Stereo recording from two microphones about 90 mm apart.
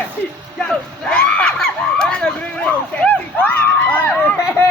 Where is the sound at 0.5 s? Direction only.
10° left (ahead or behind).